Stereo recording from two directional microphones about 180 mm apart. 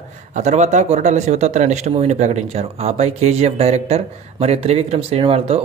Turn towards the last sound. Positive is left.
turn(degrees=-35)  # may be behind; listen again after turning